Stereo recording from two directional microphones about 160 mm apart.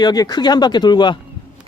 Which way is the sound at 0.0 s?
25° left (ahead or behind).